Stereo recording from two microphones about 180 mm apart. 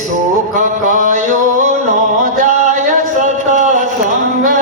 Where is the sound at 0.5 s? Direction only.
45° right (ahead or behind).